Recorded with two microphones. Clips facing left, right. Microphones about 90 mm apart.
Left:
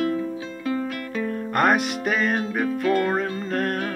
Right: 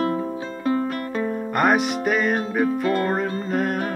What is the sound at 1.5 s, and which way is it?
Music, centre (ahead or behind).